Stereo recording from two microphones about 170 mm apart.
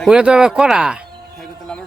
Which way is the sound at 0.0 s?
5° right (ahead or behind).